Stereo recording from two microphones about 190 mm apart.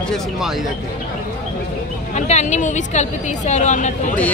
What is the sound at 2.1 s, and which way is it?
Speech, 35° left (ahead or behind).